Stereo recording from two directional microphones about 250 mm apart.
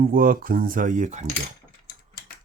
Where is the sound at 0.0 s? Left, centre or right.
Right.